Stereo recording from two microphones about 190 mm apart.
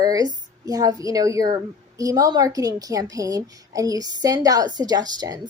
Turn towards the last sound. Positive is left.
turn(degrees=-20)  # may be behind; listen again after turning